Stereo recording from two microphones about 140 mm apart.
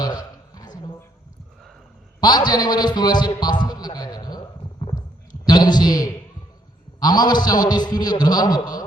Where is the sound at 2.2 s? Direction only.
30° left (ahead or behind).